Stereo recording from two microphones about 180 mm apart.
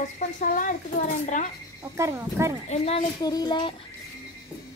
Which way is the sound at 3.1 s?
20° left (ahead or behind).